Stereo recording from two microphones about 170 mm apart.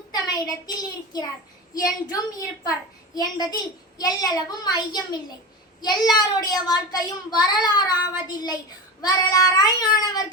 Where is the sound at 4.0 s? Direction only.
20° left (ahead or behind).